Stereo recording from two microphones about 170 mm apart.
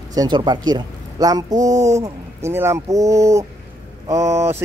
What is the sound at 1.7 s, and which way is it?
Speech, 45° right (ahead or behind).